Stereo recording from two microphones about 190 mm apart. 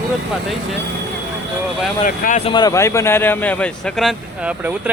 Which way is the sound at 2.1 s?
45° left (ahead or behind).